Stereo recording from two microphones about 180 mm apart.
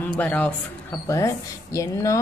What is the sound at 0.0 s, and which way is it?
A woman's voice, 10° left (ahead or behind).